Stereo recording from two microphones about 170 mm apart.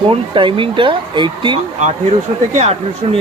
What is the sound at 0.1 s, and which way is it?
Speech, 30° right (ahead or behind).